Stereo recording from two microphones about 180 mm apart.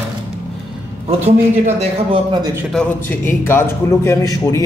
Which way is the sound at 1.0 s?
35° right (ahead or behind).